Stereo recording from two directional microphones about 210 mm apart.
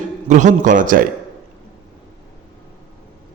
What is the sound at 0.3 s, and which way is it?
Speech, 35° right (ahead or behind).